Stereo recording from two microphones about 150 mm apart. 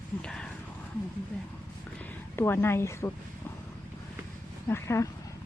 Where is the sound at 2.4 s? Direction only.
15° left (ahead or behind).